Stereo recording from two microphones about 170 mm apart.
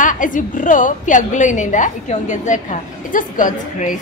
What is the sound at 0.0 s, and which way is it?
A woman's voice, 50° left (ahead or behind).